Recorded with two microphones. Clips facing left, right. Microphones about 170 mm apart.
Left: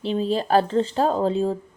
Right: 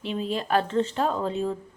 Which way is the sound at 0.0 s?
30° left (ahead or behind).